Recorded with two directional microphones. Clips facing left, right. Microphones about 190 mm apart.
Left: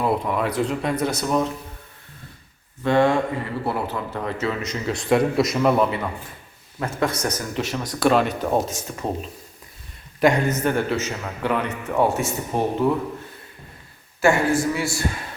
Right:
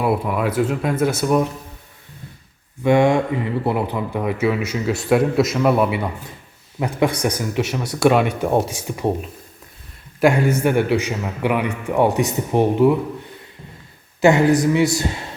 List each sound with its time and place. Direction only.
0.0 s speech: 5° right (ahead or behind)
2.8 s a man's voice: 15° right (ahead or behind)
10.2 s a man's voice: 5° right (ahead or behind)
14.2 s speech: 20° right (ahead or behind)